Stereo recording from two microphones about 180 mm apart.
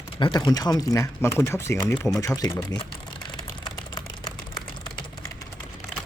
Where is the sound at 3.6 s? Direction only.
20° left (ahead or behind).